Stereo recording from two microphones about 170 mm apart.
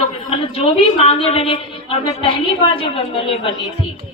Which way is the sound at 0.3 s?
30° left (ahead or behind).